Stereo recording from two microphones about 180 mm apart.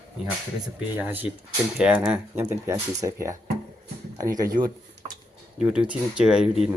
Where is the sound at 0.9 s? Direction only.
10° right (ahead or behind).